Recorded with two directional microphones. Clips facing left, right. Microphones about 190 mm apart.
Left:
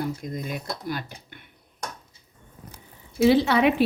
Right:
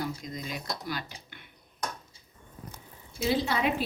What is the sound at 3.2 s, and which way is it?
Speech, 70° left (ahead or behind).